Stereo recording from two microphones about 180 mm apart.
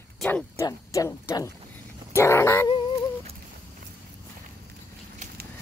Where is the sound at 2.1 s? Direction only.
15° left (ahead or behind).